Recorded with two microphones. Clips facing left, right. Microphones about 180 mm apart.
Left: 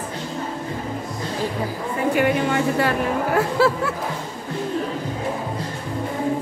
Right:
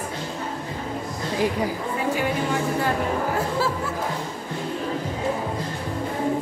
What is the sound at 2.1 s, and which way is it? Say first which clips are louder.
A woman's voice: left 8 dB; 65° left (ahead or behind).